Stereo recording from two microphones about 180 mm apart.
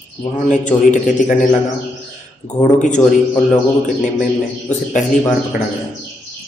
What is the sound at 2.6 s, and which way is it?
Speech, 45° left (ahead or behind).